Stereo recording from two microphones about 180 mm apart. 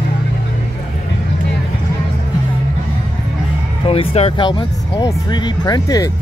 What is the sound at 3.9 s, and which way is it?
Speech, 35° left (ahead or behind).